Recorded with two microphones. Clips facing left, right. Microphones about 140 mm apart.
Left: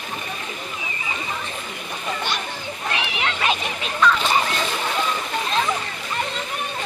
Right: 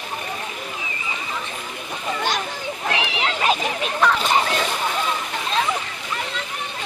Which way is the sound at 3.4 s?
50° right (ahead or behind).